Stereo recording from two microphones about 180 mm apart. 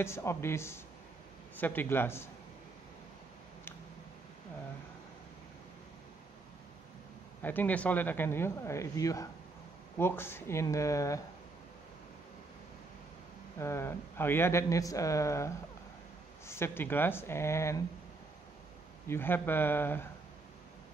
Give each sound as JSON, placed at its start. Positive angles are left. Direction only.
{"t": 0.0, "sound": "speech", "side_deg": 15}
{"t": 7.4, "sound": "speech", "side_deg": 10}
{"t": 13.6, "sound": "speech", "side_deg": 15}
{"t": 19.0, "sound": "speech", "side_deg": 10}